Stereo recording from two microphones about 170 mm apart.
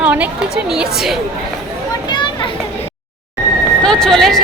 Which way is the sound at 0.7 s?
5° right (ahead or behind).